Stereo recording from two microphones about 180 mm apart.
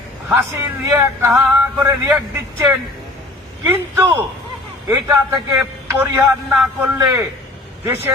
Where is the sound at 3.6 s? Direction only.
15° right (ahead or behind).